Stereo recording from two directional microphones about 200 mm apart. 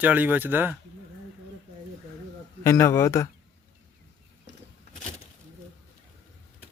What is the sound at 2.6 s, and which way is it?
Speech, 15° left (ahead or behind).